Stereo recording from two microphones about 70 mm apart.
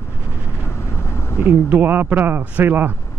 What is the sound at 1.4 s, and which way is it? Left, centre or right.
Speech, right.